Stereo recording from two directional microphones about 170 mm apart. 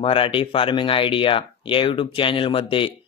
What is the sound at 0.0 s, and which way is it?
Speech, 30° left (ahead or behind).